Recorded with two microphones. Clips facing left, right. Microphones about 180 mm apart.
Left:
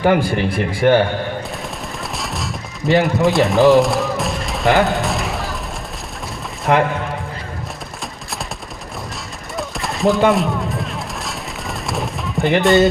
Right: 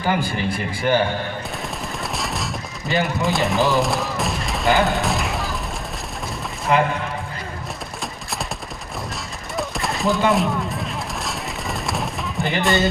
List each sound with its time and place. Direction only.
0.0 s speech: 70° left (ahead or behind)
2.1 s gunshot: centre (ahead or behind)
6.7 s speech: 70° left (ahead or behind)
9.6 s gunshot: centre (ahead or behind)